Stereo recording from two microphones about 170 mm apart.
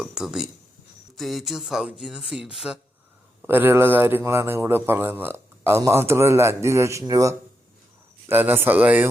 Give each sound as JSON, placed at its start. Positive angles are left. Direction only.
{"t": 0.0, "sound": "a man's voice", "side_deg": -5}